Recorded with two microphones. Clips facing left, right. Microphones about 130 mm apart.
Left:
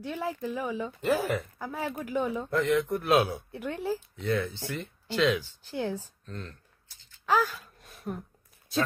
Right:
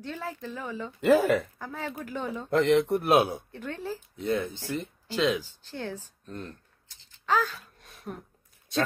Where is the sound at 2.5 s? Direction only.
85° right.